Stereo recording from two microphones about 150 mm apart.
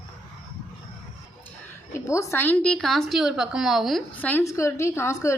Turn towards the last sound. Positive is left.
turn(degrees=20)  # may be behind; listen again after turning